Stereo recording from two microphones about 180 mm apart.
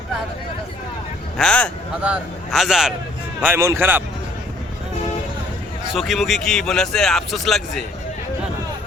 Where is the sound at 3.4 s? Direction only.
15° right (ahead or behind).